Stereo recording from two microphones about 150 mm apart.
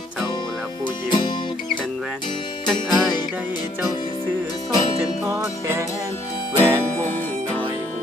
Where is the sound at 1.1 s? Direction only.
30° left (ahead or behind).